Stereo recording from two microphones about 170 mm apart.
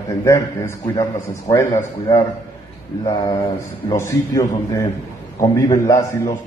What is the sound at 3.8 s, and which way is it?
A man's voice, 20° left (ahead or behind).